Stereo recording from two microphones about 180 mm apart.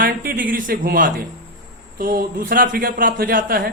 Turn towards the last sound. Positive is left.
turn(degrees=-50)  # may be behind; listen again after turning